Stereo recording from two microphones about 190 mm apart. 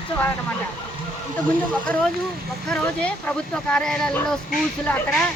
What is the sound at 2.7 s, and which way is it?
Speech, 5° left (ahead or behind).